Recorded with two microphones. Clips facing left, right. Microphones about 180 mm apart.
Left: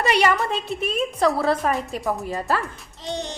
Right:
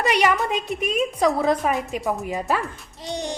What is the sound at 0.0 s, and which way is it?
Speech, 15° right (ahead or behind).